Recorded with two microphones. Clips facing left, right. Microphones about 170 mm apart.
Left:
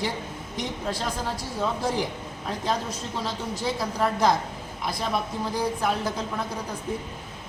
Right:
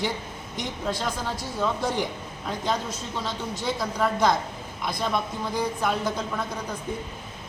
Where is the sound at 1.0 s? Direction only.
30° left (ahead or behind).